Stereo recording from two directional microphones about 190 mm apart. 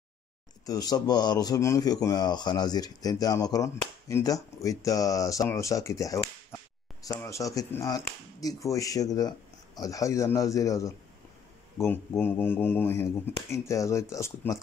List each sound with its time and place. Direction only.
0.7 s a man's voice: 20° left (ahead or behind)